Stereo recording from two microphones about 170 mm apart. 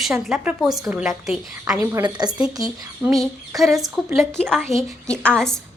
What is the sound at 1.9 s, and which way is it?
Speech, 15° right (ahead or behind).